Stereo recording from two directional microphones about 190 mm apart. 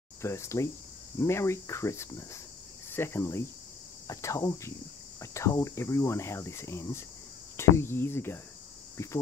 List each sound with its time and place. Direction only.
0.2 s speech: 15° left (ahead or behind)
2.9 s cricket: 10° left (ahead or behind)
4.1 s speech: 15° left (ahead or behind)